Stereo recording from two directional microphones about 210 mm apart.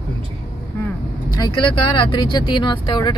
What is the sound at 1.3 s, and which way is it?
Speech, 20° left (ahead or behind).